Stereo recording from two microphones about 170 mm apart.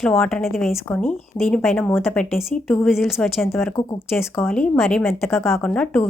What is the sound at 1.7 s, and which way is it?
Speech, 10° left (ahead or behind).